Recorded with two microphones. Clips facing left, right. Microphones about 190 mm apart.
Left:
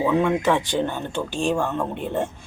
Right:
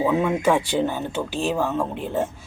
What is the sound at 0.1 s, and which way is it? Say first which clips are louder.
A woman's voice: even; 5° right (ahead or behind).